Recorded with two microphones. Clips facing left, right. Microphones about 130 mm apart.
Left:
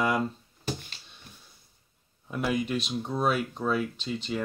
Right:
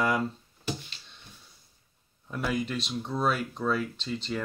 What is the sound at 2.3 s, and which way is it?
Speech, 10° left (ahead or behind).